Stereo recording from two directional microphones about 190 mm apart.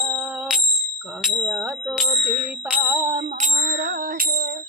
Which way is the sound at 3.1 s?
30° right (ahead or behind).